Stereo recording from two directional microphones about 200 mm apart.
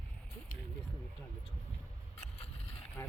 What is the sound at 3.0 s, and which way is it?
Speech, 15° left (ahead or behind).